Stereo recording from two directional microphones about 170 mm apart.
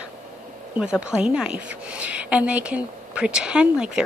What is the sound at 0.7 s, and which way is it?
A woman's voice, 5° right (ahead or behind).